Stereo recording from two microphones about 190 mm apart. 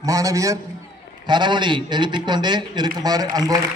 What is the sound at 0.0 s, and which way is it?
A man's voice, 15° right (ahead or behind).